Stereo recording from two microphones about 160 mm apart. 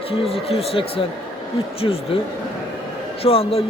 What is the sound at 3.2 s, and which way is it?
Speech, 35° left (ahead or behind).